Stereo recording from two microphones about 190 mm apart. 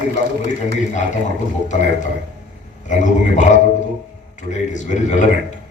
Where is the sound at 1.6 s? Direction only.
40° left (ahead or behind).